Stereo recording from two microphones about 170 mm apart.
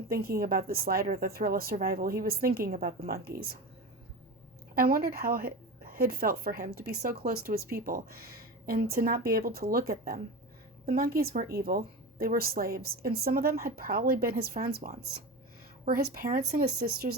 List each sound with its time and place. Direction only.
0.1 s a woman's voice: 60° right (ahead or behind)
4.7 s a woman's voice: 60° right (ahead or behind)